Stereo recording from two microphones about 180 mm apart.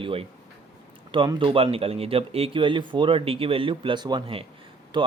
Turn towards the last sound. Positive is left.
turn(degrees=-25)  # may be behind; listen again after turning